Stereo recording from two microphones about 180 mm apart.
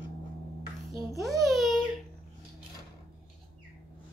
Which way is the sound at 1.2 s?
Centre (ahead or behind).